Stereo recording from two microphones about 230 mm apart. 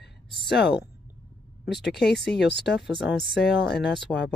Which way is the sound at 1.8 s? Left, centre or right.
Left.